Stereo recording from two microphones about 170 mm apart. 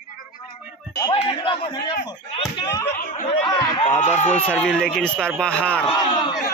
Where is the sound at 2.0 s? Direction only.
25° left (ahead or behind).